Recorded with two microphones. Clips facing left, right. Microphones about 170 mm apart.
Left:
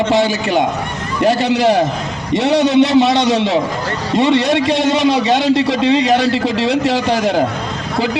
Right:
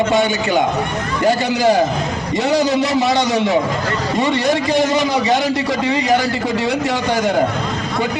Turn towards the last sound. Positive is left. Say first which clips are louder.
# left 3 dB
turn(degrees=70)  # may be behind; listen again after turning